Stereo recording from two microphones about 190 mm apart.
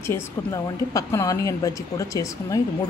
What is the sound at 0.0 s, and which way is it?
A woman's voice, 15° left (ahead or behind).